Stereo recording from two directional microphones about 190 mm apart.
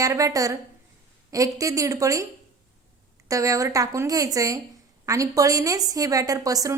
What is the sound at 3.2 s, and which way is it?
A woman's voice, 15° right (ahead or behind).